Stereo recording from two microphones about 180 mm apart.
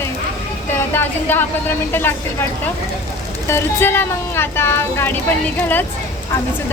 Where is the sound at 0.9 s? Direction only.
10° left (ahead or behind).